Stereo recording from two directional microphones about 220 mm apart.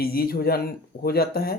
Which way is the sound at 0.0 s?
45° left (ahead or behind).